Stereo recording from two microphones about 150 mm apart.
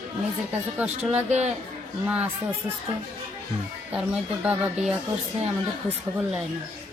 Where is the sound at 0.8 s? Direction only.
10° right (ahead or behind).